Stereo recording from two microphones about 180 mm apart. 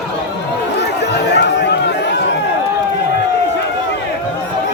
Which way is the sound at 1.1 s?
70° left (ahead or behind).